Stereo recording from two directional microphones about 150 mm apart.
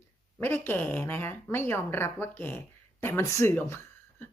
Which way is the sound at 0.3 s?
15° left (ahead or behind).